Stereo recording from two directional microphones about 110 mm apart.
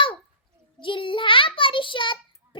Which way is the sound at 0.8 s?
50° left (ahead or behind).